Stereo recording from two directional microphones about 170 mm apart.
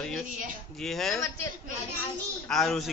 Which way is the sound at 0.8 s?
Centre (ahead or behind).